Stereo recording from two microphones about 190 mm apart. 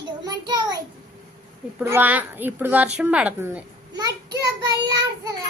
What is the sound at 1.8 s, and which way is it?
Speech, 10° right (ahead or behind).